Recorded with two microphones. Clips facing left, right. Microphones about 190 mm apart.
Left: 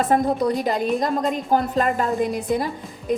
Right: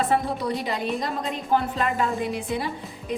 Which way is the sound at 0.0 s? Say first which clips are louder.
Left 5 dB; 45° left (ahead or behind).